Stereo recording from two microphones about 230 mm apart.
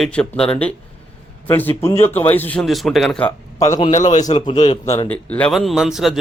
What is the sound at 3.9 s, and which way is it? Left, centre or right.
Speech, left.